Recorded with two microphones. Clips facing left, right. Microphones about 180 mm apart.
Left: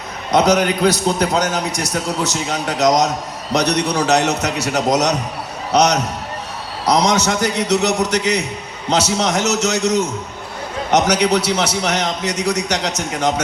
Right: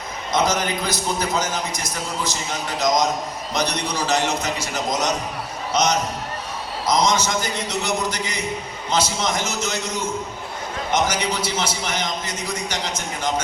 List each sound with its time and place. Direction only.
0.3 s a man's voice: 70° left (ahead or behind)